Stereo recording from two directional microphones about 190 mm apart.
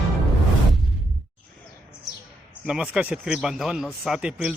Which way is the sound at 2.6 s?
5° right (ahead or behind).